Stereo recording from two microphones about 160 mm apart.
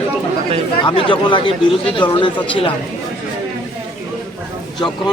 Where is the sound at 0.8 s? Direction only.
30° left (ahead or behind).